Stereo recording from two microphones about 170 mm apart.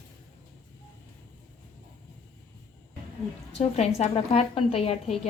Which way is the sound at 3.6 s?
40° left (ahead or behind).